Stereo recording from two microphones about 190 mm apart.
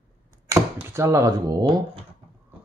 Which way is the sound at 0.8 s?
15° right (ahead or behind).